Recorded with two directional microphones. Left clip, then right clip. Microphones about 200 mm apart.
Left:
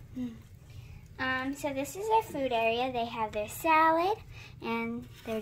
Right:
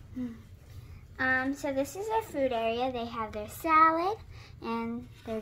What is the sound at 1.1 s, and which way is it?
Speech, 15° left (ahead or behind).